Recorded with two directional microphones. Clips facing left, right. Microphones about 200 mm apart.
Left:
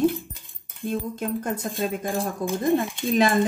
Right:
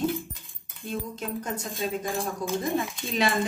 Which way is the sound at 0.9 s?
50° left (ahead or behind).